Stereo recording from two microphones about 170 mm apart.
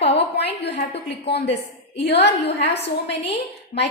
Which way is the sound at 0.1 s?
80° left.